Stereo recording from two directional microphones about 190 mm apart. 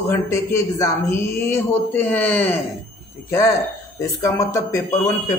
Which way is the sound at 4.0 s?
15° left (ahead or behind).